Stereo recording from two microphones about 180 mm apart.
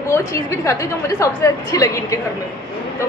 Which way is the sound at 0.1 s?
15° left (ahead or behind).